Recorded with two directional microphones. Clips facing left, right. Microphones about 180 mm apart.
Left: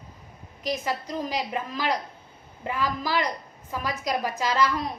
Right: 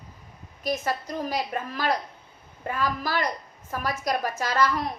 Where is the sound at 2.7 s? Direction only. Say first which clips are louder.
Even; 15° left (ahead or behind).